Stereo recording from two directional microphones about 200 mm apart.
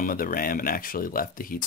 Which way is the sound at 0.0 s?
45° left (ahead or behind).